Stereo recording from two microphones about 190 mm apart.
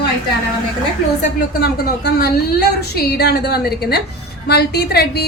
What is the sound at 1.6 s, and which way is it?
A woman's voice, 55° left (ahead or behind).